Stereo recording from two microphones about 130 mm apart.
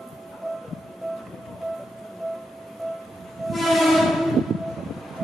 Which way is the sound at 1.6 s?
Centre (ahead or behind).